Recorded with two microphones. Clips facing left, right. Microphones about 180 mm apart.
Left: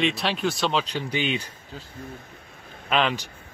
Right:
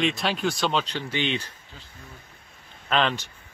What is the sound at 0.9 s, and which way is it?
Speech, 15° left (ahead or behind).